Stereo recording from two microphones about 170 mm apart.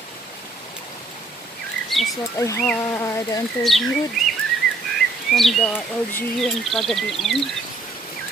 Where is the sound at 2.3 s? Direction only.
20° left (ahead or behind).